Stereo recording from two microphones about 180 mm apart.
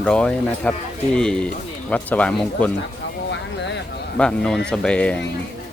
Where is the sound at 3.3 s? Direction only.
80° left.